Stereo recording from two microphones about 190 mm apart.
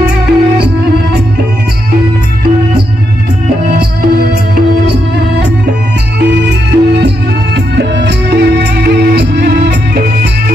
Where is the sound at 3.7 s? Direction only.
55° right (ahead or behind).